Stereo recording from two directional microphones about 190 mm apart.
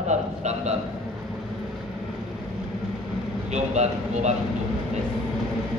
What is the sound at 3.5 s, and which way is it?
Speech, 35° right (ahead or behind).